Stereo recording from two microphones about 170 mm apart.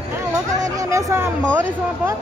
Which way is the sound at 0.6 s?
20° right (ahead or behind).